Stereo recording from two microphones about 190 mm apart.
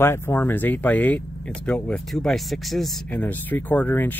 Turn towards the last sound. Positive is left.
turn(degrees=10)  # may be behind; listen again after turning